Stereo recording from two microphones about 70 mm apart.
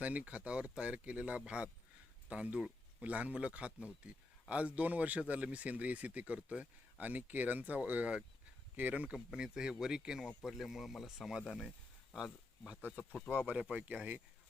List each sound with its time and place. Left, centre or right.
0.0 s a man's voice: right
9.1 s a man's voice: centre